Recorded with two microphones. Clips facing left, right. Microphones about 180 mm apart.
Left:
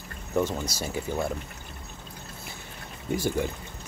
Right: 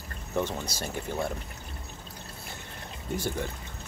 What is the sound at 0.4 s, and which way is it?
Speech, 10° left (ahead or behind).